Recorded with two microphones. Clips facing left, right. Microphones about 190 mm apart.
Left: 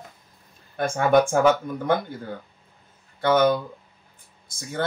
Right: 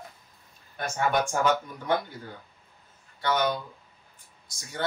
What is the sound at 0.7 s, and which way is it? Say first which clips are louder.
Speech: left 8 dB; 55° left (ahead or behind).